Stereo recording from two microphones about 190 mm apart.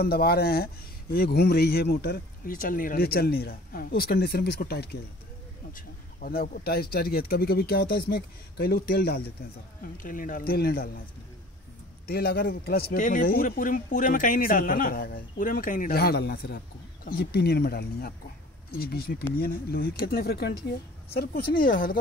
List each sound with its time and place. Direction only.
0.0 s speech: 55° left (ahead or behind)
9.9 s speech: 45° left (ahead or behind)
12.1 s speech: 55° left (ahead or behind)